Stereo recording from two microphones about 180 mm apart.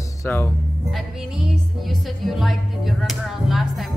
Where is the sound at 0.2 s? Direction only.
10° left (ahead or behind).